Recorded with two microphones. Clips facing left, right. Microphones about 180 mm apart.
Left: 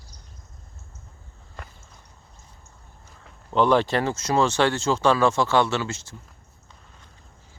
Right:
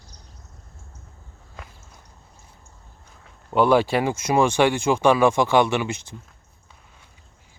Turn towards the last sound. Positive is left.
turn(degrees=-15)  # may be behind; listen again after turning